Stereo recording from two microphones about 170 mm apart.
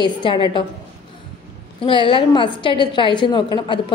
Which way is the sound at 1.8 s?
30° left (ahead or behind).